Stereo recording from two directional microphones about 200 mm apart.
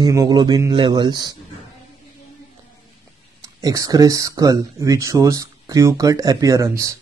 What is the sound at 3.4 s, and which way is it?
Speech, 15° right (ahead or behind).